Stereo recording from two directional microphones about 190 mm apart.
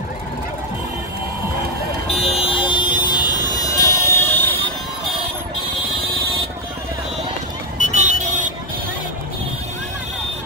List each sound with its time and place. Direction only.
2.3 s vehicle: 30° left (ahead or behind); by 4.6 s 10° left (ahead or behind)
7.9 s vehicle: 40° right (ahead or behind)